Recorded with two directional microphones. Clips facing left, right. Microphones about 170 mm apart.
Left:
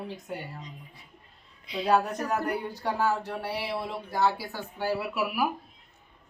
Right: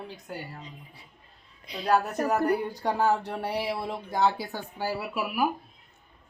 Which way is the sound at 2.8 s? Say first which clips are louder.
Right 2 dB; 15° right (ahead or behind).